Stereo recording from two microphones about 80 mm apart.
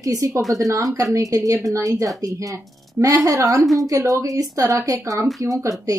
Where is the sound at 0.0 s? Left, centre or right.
Right.